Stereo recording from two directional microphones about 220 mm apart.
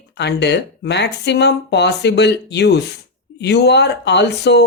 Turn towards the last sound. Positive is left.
turn(degrees=50)  # may be behind; listen again after turning